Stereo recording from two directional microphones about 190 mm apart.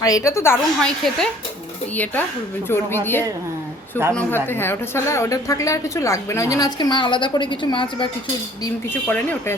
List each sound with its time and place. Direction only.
0.0 s a woman's voice: 15° left (ahead or behind)
2.6 s a woman's voice: 10° left (ahead or behind)
8.6 s a woman's voice: 10° left (ahead or behind)